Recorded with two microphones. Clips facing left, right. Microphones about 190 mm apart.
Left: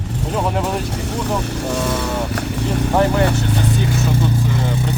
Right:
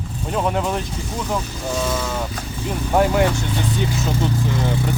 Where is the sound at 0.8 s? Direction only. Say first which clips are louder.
Left 4 dB; 75° left (ahead or behind).